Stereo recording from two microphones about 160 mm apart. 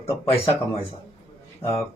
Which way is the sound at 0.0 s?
35° left (ahead or behind).